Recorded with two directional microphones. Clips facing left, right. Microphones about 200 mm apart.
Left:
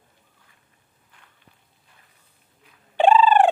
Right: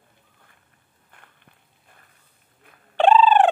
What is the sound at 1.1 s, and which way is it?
Walk, 55° right (ahead or behind).